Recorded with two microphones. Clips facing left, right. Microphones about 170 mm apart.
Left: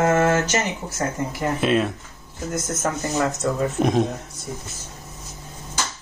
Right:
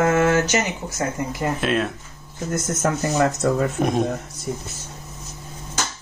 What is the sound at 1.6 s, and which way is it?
Speech, centre (ahead or behind).